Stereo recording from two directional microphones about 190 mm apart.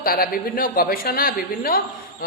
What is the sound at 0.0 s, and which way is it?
A woman's voice, 50° left (ahead or behind).